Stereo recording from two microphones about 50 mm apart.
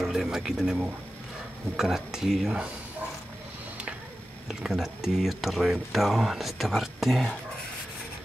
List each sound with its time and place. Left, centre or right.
0.0 s speech: centre
1.8 s speech: centre
4.5 s speech: centre